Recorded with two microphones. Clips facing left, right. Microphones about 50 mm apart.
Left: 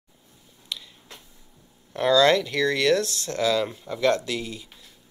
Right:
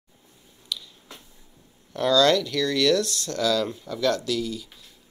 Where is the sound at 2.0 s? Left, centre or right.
Left.